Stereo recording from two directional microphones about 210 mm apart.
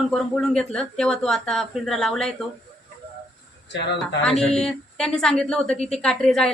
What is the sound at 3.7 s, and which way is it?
Speech, 55° left (ahead or behind).